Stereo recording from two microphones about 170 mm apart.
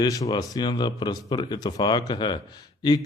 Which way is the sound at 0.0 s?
20° left (ahead or behind).